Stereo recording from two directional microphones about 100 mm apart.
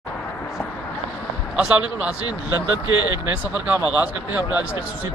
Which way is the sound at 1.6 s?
10° right (ahead or behind).